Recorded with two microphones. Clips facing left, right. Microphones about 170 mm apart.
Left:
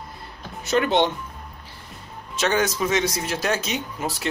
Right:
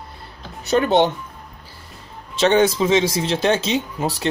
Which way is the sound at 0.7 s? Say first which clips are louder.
Right 4 dB; 35° right (ahead or behind).